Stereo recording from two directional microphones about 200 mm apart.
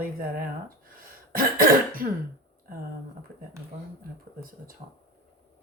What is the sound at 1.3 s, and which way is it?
Speech, 45° right (ahead or behind).